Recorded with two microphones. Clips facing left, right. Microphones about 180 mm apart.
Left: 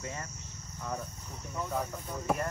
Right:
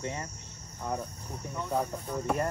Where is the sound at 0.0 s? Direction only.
30° right (ahead or behind).